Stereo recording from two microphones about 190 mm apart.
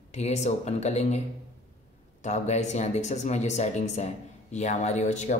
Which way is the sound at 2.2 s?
35° left (ahead or behind).